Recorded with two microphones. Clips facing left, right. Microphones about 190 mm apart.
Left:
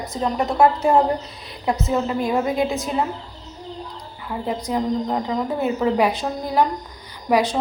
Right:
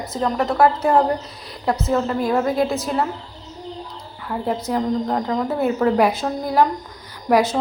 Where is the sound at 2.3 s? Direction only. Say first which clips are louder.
Right 3 dB; 15° left (ahead or behind).